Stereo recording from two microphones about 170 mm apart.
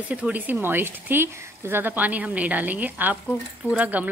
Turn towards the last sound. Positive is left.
turn(degrees=-10)  # may be behind; listen again after turning